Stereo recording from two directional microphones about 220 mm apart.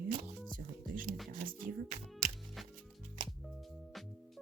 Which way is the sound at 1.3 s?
35° right (ahead or behind).